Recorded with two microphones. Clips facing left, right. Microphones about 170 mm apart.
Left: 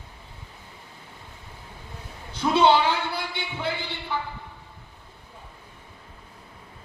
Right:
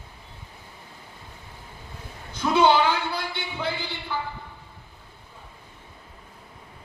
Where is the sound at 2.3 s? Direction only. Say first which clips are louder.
Even; 25° left (ahead or behind).